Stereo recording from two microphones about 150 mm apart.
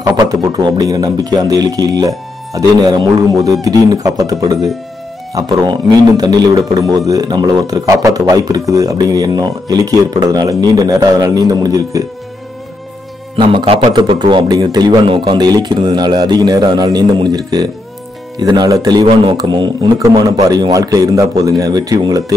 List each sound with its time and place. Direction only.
0.0 s a man's voice: 25° right (ahead or behind)
13.4 s a man's voice: 35° right (ahead or behind)